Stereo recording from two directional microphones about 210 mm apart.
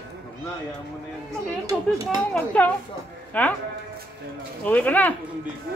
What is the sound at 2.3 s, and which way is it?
Speech, 5° left (ahead or behind).